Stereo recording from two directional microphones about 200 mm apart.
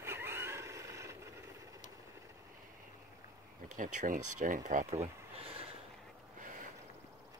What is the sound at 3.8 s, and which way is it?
Speech, 40° right (ahead or behind).